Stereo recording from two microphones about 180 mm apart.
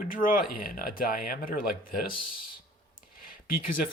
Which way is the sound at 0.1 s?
50° left (ahead or behind).